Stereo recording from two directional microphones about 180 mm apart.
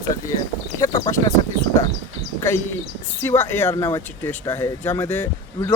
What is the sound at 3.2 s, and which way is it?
Speech, 15° left (ahead or behind).